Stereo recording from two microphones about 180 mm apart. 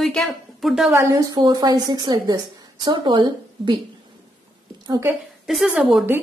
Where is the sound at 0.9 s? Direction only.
15° right (ahead or behind).